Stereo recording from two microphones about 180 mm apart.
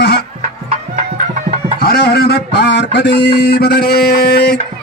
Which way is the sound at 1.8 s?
55° left (ahead or behind).